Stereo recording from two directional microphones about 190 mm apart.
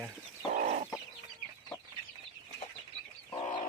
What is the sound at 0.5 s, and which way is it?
Chicken, 45° right (ahead or behind).